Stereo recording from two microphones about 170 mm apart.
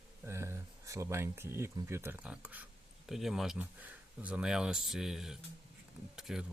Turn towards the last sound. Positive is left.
turn(degrees=-5)  # may be behind; listen again after turning